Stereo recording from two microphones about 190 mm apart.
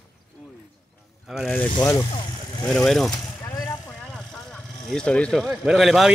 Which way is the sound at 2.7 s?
Centre (ahead or behind).